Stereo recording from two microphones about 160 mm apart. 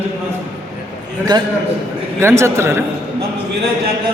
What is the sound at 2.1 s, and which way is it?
Speech, 15° right (ahead or behind).